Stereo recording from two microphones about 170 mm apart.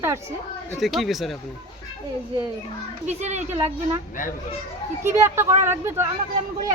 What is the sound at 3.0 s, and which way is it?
Speech, 40° right (ahead or behind).